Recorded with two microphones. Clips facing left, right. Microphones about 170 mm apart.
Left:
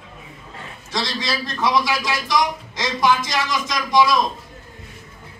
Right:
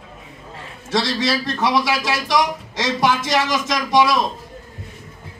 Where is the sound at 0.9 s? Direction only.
75° right (ahead or behind).